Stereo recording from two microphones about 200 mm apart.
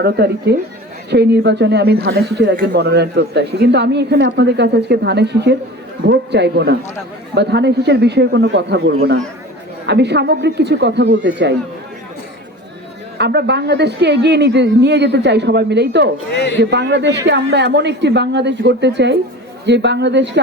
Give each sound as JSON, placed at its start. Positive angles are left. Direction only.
{"t": 0.5, "sound": "speech", "side_deg": -55}
{"t": 13.1, "sound": "speech", "side_deg": -55}
{"t": 16.3, "sound": "a man's voice", "side_deg": 60}
{"t": 16.6, "sound": "speech", "side_deg": -60}